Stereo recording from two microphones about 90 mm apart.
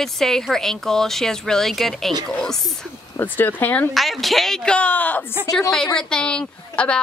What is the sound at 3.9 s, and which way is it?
Speech, centre (ahead or behind).